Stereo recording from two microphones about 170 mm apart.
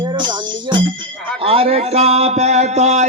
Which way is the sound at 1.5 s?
35° right (ahead or behind).